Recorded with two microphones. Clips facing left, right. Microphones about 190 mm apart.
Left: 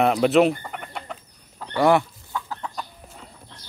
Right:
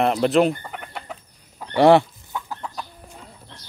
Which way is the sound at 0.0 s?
Centre (ahead or behind).